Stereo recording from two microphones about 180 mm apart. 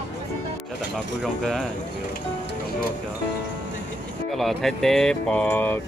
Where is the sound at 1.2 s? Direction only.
Centre (ahead or behind).